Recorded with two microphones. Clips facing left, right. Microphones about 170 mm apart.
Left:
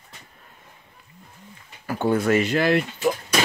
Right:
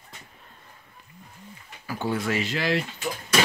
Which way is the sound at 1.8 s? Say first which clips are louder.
Left 6 dB; 55° left (ahead or behind).